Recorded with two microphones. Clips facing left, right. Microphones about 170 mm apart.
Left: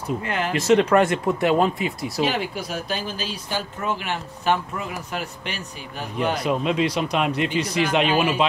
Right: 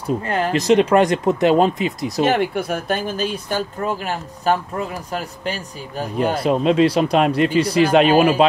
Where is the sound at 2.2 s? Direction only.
55° right (ahead or behind).